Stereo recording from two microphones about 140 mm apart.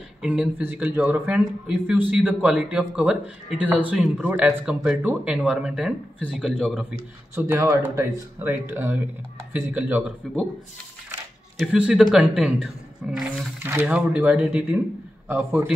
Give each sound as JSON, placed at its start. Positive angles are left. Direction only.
{"t": 0.2, "sound": "a man's voice", "side_deg": -10}
{"t": 7.3, "sound": "a man's voice", "side_deg": -15}
{"t": 11.5, "sound": "a man's voice", "side_deg": -5}